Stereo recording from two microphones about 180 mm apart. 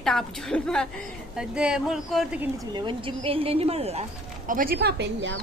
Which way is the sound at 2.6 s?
25° right (ahead or behind).